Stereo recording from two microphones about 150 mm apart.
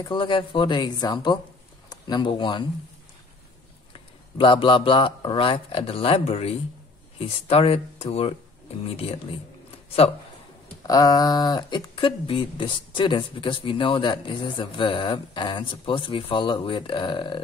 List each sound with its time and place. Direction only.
0.1 s speech: 35° left (ahead or behind)
4.4 s speech: 35° left (ahead or behind)
10.8 s speech: 25° left (ahead or behind)